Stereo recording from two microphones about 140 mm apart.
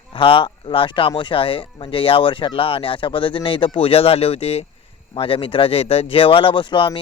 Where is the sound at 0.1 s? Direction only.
40° left (ahead or behind).